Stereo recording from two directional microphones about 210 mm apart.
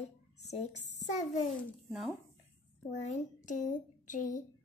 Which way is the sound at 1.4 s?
Centre (ahead or behind).